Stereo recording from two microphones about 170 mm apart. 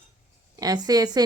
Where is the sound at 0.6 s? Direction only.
20° right (ahead or behind).